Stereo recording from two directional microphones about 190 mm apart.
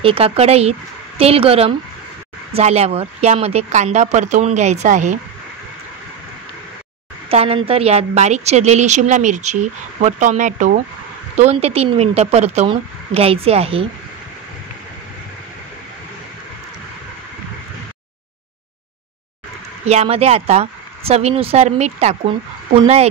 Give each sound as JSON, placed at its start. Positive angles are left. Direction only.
{"t": 0.0, "sound": "a woman's voice", "side_deg": -30}
{"t": 7.2, "sound": "a woman's voice", "side_deg": -30}
{"t": 19.9, "sound": "a woman's voice", "side_deg": -35}